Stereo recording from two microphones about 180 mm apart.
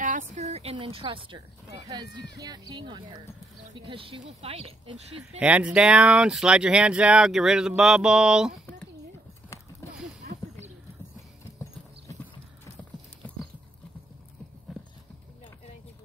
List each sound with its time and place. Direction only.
0.0 s speech: 45° right (ahead or behind)
5.4 s speech: 5° right (ahead or behind)
10.3 s a sound: 60° right (ahead or behind)